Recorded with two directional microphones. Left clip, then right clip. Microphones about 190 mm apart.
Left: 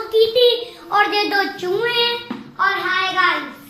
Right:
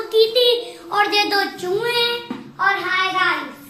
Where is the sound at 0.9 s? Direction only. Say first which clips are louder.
Left 1 dB; 15° left (ahead or behind).